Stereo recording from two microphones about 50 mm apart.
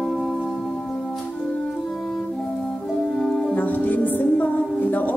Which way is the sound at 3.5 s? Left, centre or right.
Left.